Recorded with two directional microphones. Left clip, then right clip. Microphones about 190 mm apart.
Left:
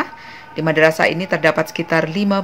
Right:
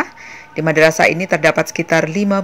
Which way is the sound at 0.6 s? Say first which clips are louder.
Right 2 dB; 20° right (ahead or behind).